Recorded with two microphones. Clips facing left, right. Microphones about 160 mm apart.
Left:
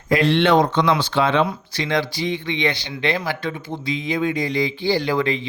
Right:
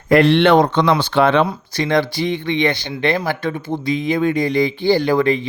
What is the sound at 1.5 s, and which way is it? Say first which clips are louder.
Speech: right 4 dB; 45° right (ahead or behind).